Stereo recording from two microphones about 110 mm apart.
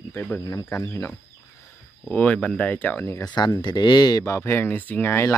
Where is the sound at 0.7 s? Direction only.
25° left (ahead or behind).